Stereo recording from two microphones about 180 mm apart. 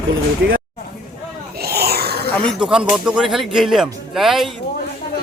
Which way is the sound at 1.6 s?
60° right (ahead or behind).